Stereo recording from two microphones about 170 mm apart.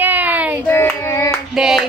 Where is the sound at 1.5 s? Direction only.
5° right (ahead or behind).